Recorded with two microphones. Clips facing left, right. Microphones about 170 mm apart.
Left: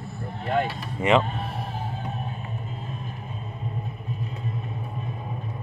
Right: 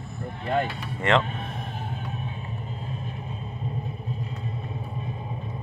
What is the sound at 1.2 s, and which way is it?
Music, 35° left (ahead or behind).